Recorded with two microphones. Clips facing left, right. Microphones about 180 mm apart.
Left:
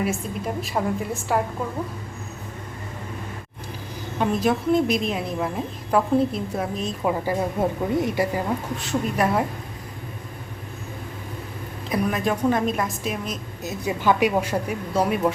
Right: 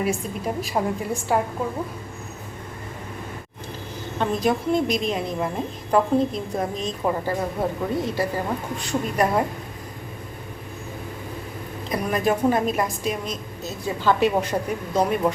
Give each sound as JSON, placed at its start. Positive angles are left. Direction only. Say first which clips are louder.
{"t": 0.0, "sound": "a woman's voice", "louder": "right 1 dB", "side_deg": 0}
{"t": 4.2, "sound": "a woman's voice", "louder": "left 1 dB", "side_deg": 5}
{"t": 7.6, "sound": "speech", "louder": "left 2 dB", "side_deg": 20}
{"t": 8.8, "sound": "a woman's voice", "louder": "right 1 dB", "side_deg": 0}
{"t": 11.9, "sound": "a woman's voice", "louder": "right 1 dB", "side_deg": 0}